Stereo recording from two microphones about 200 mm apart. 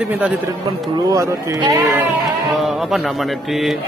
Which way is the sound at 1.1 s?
15° right (ahead or behind).